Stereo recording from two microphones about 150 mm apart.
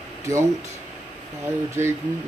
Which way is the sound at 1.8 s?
15° right (ahead or behind).